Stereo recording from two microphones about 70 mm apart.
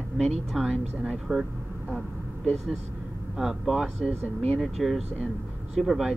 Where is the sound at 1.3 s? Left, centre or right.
Right.